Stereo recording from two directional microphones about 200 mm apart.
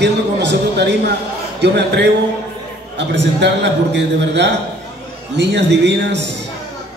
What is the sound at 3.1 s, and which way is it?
A man's voice, 60° right (ahead or behind).